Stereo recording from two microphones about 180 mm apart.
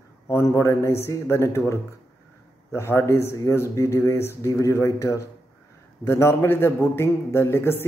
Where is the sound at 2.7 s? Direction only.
15° left (ahead or behind).